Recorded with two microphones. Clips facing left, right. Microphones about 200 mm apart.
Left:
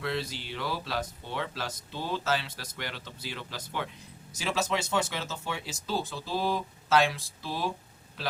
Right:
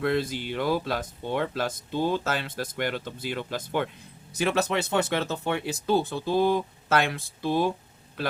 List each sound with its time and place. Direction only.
0.0 s speech: 50° right (ahead or behind)